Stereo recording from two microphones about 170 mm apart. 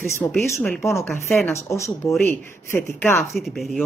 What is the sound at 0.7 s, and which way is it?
Speech, centre (ahead or behind).